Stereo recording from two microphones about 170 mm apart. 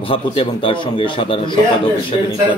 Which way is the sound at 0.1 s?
30° left (ahead or behind).